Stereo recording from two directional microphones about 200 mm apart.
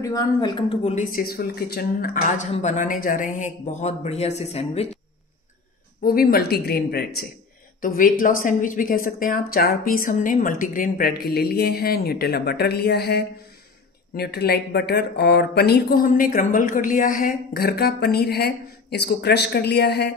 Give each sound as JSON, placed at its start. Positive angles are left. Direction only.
{"t": 0.0, "sound": "a woman's voice", "side_deg": 15}
{"t": 1.1, "sound": "speech", "side_deg": 50}
{"t": 6.0, "sound": "speech", "side_deg": 50}